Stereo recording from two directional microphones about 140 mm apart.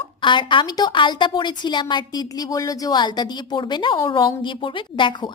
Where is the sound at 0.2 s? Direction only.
35° left (ahead or behind).